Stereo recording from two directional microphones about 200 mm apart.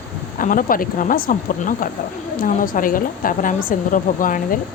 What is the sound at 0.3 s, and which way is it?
Speech, 45° left (ahead or behind).